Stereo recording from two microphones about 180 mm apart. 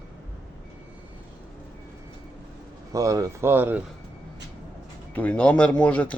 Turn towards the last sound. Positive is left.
turn(degrees=5)  # may be behind; listen again after turning